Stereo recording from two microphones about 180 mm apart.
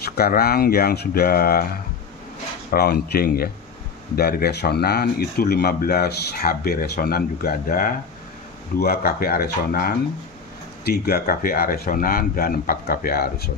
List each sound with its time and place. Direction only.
0.0 s speech: 60° left (ahead or behind)
2.7 s speech: 60° left (ahead or behind)